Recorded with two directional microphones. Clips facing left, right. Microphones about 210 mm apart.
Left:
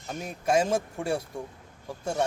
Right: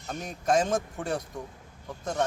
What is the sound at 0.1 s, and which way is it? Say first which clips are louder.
Speech: even; 5° left (ahead or behind).